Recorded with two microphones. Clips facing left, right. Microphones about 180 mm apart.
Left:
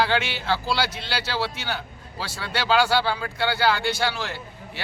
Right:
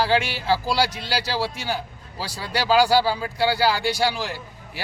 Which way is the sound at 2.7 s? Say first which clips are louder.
Right 3 dB; 5° right (ahead or behind).